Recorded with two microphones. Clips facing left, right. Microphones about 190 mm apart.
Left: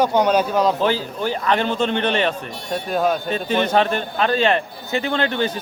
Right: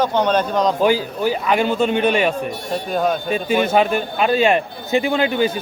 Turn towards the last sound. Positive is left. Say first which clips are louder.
# right 3 dB
turn(degrees=-10)  # may be behind; listen again after turning